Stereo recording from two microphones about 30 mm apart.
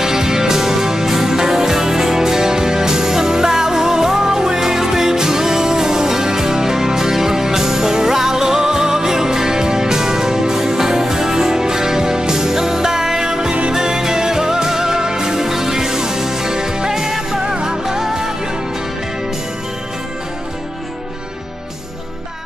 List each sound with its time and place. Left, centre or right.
0.0 s music: centre